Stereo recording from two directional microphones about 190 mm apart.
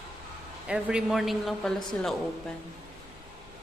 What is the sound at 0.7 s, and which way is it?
A woman's voice, 5° right (ahead or behind).